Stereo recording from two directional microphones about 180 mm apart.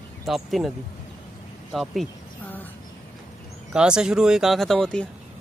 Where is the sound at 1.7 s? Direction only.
Centre (ahead or behind).